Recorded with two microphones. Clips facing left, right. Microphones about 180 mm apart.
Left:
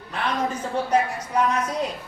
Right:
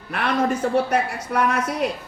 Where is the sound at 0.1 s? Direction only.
70° right (ahead or behind).